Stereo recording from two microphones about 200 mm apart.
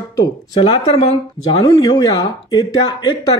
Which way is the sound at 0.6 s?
20° left (ahead or behind).